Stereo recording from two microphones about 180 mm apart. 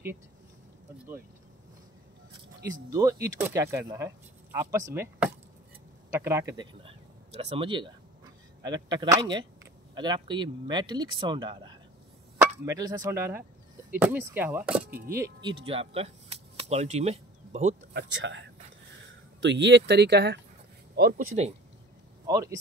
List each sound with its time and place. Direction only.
2.9 s speech: 20° right (ahead or behind)
15.5 s speech: 30° right (ahead or behind)
17.9 s speech: 80° right
19.4 s speech: 80° right; by 21.3 s 60° right (ahead or behind)
22.2 s speech: 20° right (ahead or behind)